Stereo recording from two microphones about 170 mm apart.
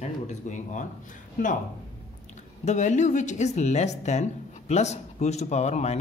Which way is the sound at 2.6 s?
45° left (ahead or behind).